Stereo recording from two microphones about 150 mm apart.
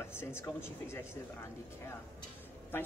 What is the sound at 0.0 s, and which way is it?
Speech, 15° left (ahead or behind).